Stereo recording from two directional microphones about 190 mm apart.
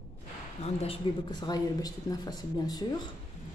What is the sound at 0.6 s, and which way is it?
Speech, 30° left (ahead or behind).